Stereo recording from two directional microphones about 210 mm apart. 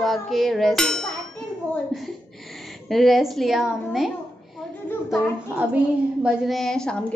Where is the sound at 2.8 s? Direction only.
Centre (ahead or behind).